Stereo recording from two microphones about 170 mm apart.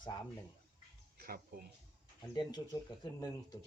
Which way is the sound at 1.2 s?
60° right (ahead or behind).